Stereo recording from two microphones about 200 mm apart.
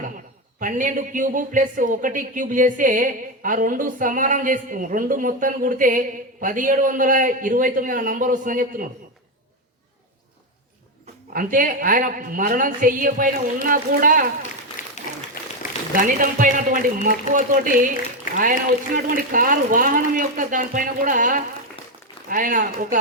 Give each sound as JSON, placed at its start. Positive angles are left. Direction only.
{"t": 0.6, "sound": "speech", "side_deg": -40}
{"t": 11.0, "sound": "a woman's voice", "side_deg": -45}
{"t": 16.0, "sound": "a woman's voice", "side_deg": -40}
{"t": 18.9, "sound": "a woman's voice", "side_deg": -45}